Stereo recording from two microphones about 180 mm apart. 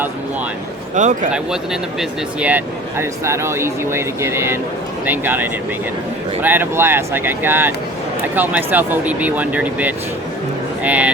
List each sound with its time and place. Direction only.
0.9 s a man's voice: 45° right (ahead or behind)
1.3 s speech: 5° right (ahead or behind)